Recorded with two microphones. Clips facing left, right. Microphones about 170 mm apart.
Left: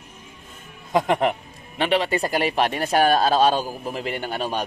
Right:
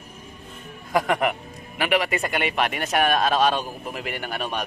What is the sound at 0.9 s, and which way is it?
A man's voice, 25° left (ahead or behind).